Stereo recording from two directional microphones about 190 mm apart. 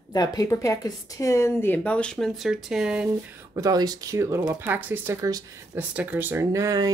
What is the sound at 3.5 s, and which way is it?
Speech, 20° right (ahead or behind).